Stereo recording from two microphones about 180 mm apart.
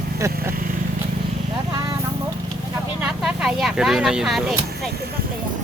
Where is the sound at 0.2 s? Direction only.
15° right (ahead or behind).